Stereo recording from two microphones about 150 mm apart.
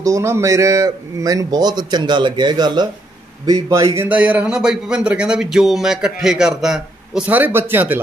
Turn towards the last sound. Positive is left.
turn(degrees=-10)  # may be behind; listen again after turning